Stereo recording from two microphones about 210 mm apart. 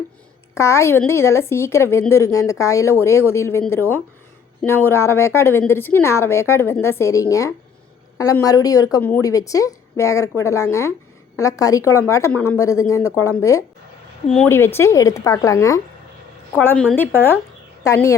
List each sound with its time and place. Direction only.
0.5 s a woman's voice: 15° left (ahead or behind)
16.6 s a woman's voice: 5° left (ahead or behind)